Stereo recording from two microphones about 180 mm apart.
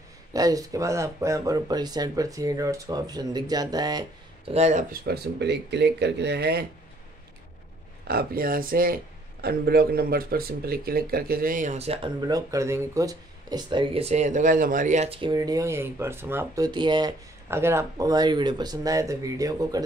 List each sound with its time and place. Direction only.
0.3 s speech: 20° right (ahead or behind)
4.6 s speech: 40° right (ahead or behind)
5.0 s speech: 65° right (ahead or behind)
8.1 s speech: 55° right (ahead or behind); by 12.1 s 35° right (ahead or behind)
12.2 s speech: 20° right (ahead or behind)
17.5 s speech: 15° right (ahead or behind)